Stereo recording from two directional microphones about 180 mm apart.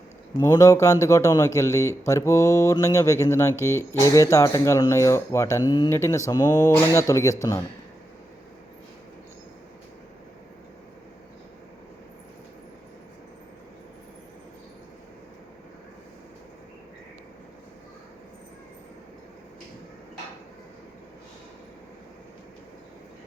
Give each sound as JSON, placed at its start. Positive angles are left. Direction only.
{"t": 0.3, "sound": "speech", "side_deg": 20}